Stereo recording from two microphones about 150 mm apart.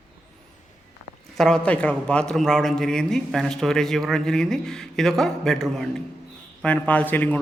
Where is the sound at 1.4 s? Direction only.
5° left (ahead or behind).